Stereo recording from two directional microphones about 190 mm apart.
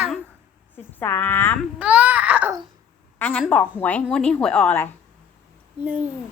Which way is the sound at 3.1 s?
5° left (ahead or behind).